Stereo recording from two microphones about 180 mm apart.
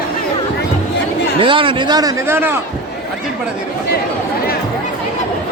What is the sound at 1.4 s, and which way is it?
A man's voice, 30° right (ahead or behind).